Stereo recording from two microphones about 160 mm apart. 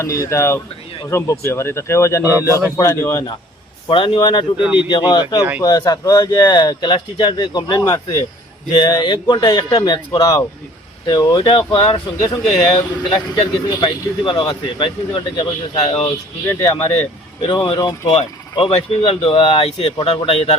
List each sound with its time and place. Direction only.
0.0 s speech: 20° left (ahead or behind)
3.8 s speech: 35° left (ahead or behind)
5.4 s speech: 10° right (ahead or behind)
5.6 s speech: 25° left (ahead or behind)
16.6 s speech: 25° left (ahead or behind)